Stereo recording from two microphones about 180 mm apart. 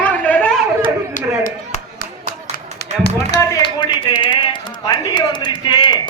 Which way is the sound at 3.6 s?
25° left (ahead or behind).